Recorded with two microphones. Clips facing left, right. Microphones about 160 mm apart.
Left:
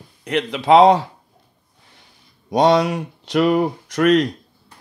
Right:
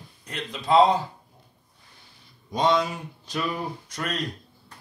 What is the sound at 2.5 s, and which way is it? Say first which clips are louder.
Speech: left 8 dB; 75° left (ahead or behind).